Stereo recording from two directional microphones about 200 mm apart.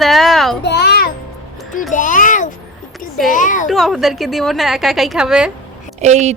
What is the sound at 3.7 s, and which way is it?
A woman's voice, centre (ahead or behind).